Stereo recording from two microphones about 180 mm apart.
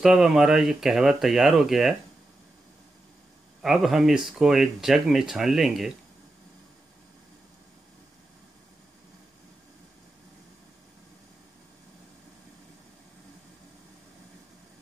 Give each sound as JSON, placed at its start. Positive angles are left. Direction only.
{"t": 0.0, "sound": "speech", "side_deg": -5}
{"t": 3.6, "sound": "speech", "side_deg": 0}